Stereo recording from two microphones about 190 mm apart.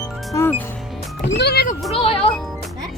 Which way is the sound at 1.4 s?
55° left (ahead or behind).